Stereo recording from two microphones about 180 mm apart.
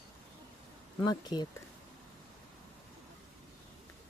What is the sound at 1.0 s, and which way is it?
Speech, 25° left (ahead or behind).